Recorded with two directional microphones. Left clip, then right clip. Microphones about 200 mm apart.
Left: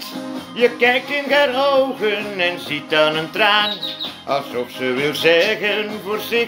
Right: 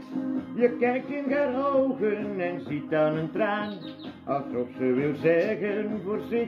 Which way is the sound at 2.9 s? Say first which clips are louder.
Left 8 dB; 10° right (ahead or behind).